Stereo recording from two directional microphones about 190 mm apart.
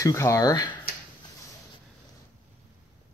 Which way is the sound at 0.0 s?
15° left (ahead or behind).